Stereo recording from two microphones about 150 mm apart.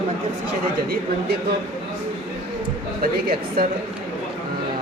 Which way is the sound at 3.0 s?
80° right.